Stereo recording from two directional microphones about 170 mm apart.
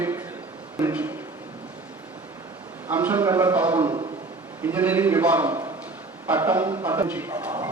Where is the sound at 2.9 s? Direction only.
10° right (ahead or behind).